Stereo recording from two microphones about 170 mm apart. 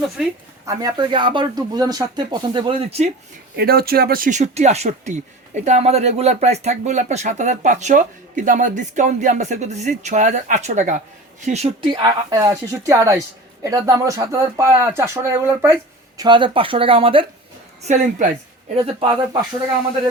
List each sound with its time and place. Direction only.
0.6 s speech: 20° right (ahead or behind)
3.5 s speech: 65° right (ahead or behind); by 12.1 s 30° right (ahead or behind)
12.3 s speech: 15° right (ahead or behind)
16.2 s speech: 30° right (ahead or behind)
17.8 s speech: 45° right (ahead or behind)